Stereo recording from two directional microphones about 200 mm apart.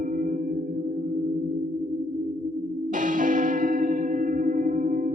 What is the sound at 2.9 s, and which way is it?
Music, 40° right (ahead or behind).